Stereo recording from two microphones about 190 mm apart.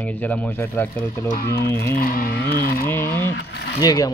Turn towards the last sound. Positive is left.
turn(degrees=20)  # may be behind; listen again after turning